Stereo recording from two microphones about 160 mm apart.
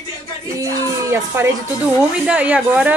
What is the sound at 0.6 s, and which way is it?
Speech, 15° right (ahead or behind).